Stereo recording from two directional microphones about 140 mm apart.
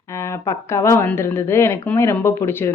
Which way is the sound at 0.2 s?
20° left (ahead or behind).